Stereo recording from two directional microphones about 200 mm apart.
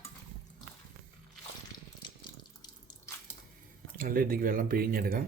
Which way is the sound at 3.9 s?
45° right (ahead or behind).